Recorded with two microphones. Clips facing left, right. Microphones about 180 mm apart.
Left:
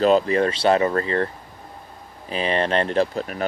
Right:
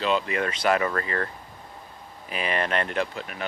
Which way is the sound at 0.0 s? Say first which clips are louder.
Left 8 dB; 40° left (ahead or behind).